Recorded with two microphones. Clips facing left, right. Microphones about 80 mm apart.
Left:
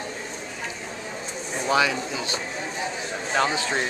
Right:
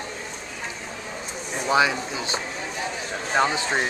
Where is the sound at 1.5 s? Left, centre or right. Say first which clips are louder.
Right 1 dB; centre.